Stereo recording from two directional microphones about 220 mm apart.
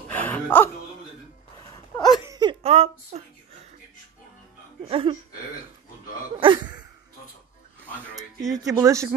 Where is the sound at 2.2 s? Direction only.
20° right (ahead or behind).